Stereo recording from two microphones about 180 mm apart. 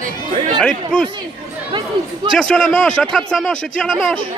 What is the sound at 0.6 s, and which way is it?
Speech, 5° left (ahead or behind).